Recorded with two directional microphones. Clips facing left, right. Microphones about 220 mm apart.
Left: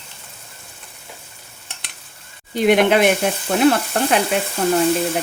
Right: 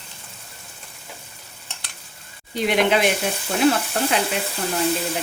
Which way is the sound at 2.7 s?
55° left (ahead or behind).